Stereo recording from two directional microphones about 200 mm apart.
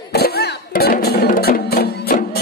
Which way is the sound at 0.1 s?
50° left (ahead or behind).